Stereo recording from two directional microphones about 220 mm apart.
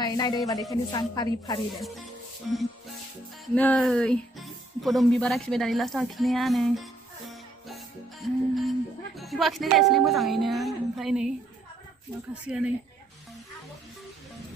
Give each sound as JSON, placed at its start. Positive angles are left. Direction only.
{"t": 0.0, "sound": "speech", "side_deg": 20}
{"t": 3.5, "sound": "speech", "side_deg": 5}
{"t": 12.4, "sound": "speech", "side_deg": -5}